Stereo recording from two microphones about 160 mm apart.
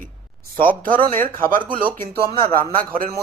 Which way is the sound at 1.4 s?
60° right (ahead or behind).